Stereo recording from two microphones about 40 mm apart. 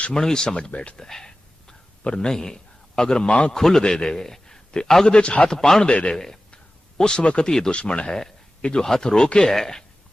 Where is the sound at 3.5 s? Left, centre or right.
Centre.